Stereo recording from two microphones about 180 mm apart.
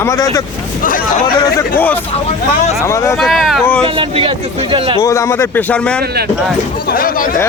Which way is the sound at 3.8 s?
30° right (ahead or behind).